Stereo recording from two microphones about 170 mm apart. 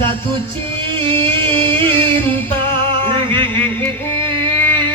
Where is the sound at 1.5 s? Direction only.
10° left (ahead or behind).